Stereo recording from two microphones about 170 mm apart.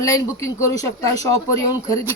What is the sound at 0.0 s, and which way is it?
A woman's voice, 20° left (ahead or behind).